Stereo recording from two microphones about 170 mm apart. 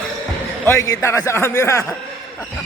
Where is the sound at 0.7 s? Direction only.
20° left (ahead or behind).